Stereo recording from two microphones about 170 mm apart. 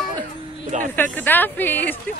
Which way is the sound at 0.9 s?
10° left (ahead or behind).